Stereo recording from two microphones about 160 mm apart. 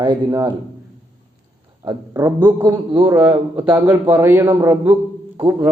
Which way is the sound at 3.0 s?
10° right (ahead or behind).